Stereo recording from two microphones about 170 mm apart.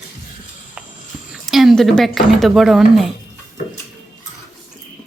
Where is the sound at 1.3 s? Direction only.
Centre (ahead or behind).